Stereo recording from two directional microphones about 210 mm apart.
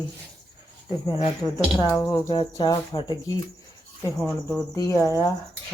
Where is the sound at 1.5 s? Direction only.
15° left (ahead or behind).